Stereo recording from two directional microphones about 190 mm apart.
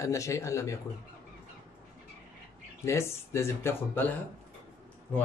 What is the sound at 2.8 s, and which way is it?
Speech, 15° left (ahead or behind).